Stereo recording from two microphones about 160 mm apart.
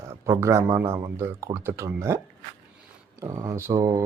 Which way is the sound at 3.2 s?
20° right (ahead or behind).